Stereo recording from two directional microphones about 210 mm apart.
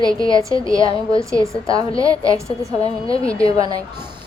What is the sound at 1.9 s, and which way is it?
Speech, 15° right (ahead or behind).